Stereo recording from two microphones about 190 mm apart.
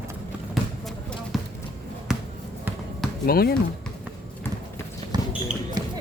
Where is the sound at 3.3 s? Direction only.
55° left (ahead or behind).